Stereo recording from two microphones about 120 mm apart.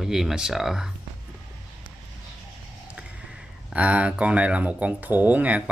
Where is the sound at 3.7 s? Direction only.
10° right (ahead or behind).